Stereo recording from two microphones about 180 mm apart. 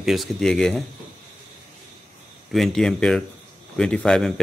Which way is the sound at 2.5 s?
Centre (ahead or behind).